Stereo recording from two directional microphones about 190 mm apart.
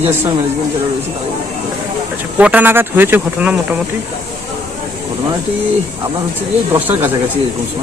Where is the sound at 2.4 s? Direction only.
10° right (ahead or behind).